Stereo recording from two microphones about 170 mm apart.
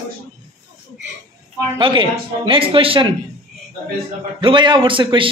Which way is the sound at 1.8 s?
30° right (ahead or behind).